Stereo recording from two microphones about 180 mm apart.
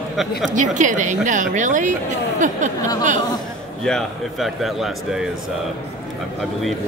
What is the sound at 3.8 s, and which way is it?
A man's voice, centre (ahead or behind).